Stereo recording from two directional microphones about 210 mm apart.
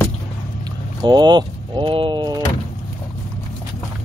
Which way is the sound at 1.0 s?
20° right (ahead or behind).